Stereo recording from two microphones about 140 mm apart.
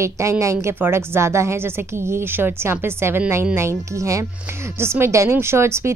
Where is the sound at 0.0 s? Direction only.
20° right (ahead or behind).